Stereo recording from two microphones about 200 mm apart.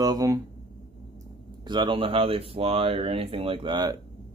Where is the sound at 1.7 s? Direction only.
25° right (ahead or behind).